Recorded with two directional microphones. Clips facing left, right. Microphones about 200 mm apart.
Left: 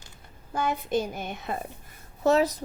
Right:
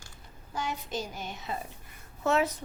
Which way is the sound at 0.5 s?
55° left (ahead or behind).